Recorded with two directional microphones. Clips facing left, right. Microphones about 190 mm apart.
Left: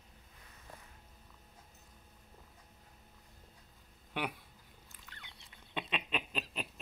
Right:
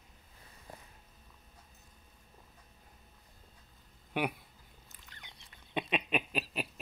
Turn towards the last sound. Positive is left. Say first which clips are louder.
# right 5 dB
turn(degrees=-10)  # may be behind; listen again after turning